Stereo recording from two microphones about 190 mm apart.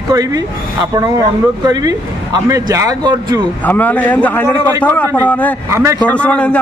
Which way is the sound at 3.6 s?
10° left (ahead or behind).